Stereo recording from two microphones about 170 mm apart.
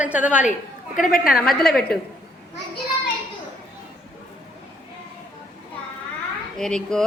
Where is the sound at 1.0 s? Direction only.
55° left (ahead or behind).